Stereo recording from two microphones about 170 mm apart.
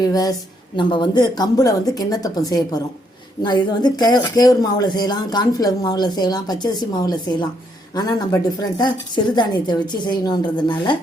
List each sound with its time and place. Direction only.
0.0 s speech: 20° left (ahead or behind)